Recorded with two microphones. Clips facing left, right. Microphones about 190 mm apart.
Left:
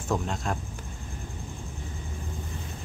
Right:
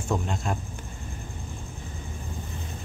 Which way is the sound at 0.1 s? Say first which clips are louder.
Even; centre (ahead or behind).